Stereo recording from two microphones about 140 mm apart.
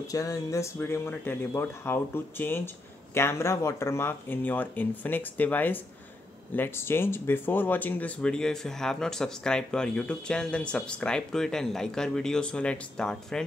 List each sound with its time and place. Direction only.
0.0 s speech: 25° left (ahead or behind); by 13.4 s 5° left (ahead or behind)